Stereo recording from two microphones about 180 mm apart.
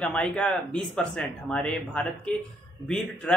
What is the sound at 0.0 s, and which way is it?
Speech, 5° left (ahead or behind).